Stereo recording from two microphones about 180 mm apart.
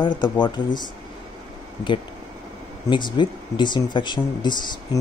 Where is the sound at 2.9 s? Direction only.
25° left (ahead or behind).